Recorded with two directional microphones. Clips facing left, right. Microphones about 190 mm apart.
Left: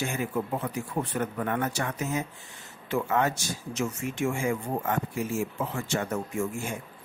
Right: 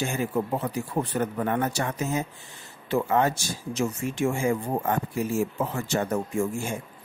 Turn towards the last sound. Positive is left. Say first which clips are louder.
# right 3 dB
turn(degrees=-30)  # may be behind; listen again after turning